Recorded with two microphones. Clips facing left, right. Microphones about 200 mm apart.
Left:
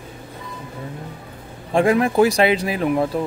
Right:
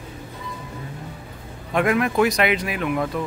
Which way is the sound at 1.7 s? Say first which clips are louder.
Left 4 dB; 30° left (ahead or behind).